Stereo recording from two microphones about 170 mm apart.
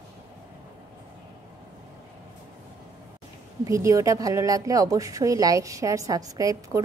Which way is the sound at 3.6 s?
20° right (ahead or behind).